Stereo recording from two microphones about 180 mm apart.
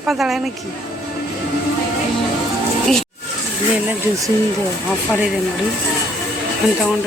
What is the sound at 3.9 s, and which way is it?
Speech, 15° right (ahead or behind).